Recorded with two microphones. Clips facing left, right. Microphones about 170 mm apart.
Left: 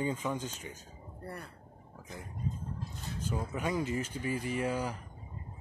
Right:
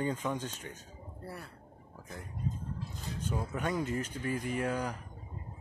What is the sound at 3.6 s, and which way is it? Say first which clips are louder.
Speech: left 1 dB; 5° left (ahead or behind).